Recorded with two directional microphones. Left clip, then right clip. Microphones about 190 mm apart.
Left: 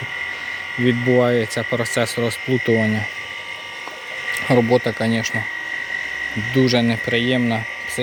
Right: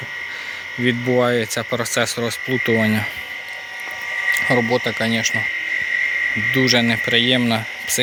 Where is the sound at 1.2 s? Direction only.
Centre (ahead or behind).